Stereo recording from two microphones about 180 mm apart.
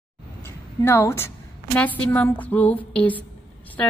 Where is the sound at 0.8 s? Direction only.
15° left (ahead or behind).